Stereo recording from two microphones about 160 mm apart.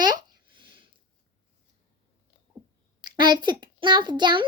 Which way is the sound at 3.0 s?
25° right (ahead or behind).